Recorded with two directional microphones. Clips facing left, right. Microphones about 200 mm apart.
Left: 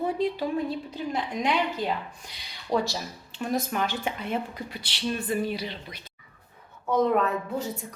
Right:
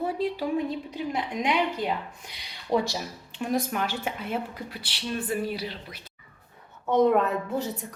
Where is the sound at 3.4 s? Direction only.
10° right (ahead or behind).